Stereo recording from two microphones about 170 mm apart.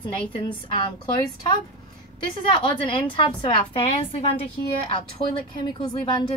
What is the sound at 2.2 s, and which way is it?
A woman's voice, 30° left (ahead or behind).